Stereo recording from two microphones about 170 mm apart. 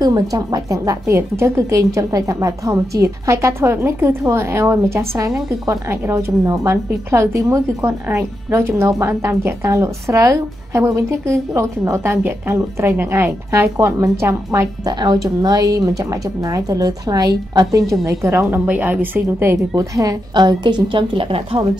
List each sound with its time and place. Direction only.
0.0 s a woman's voice: 20° right (ahead or behind)